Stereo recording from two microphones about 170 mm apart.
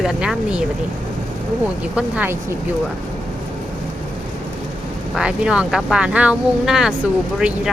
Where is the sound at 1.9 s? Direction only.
10° right (ahead or behind).